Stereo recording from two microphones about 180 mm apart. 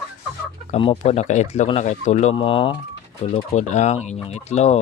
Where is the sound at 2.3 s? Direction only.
30° left (ahead or behind).